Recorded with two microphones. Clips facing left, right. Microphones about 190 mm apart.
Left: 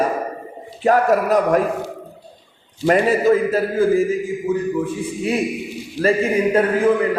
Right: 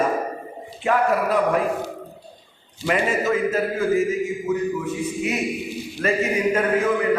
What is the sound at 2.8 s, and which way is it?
Speech, 35° left (ahead or behind).